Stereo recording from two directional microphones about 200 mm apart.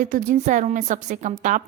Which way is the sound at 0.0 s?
40° right (ahead or behind).